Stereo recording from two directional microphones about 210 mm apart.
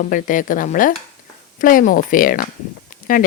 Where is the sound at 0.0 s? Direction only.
40° left (ahead or behind).